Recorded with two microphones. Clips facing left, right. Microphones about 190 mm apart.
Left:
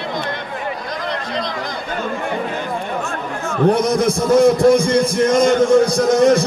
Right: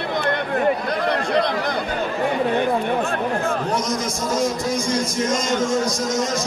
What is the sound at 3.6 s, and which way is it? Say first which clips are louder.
A man's voice: left 9 dB; 60° left (ahead or behind).